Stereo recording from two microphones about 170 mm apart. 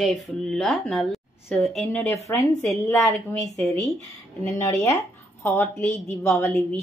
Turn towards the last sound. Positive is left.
turn(degrees=15)  # may be behind; listen again after turning